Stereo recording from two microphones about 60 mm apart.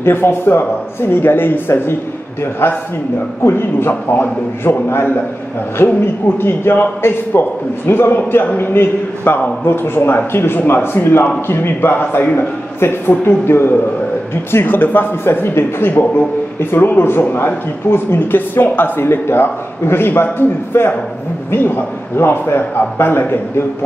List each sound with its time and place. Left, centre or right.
0.0 s a man's voice: left